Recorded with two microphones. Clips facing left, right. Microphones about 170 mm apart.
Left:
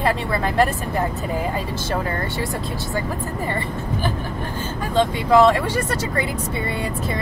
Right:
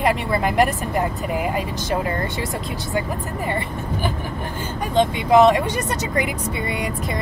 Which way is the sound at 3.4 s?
15° right (ahead or behind).